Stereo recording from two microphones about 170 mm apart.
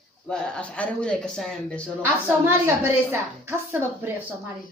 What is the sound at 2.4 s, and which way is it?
Speech, 10° right (ahead or behind).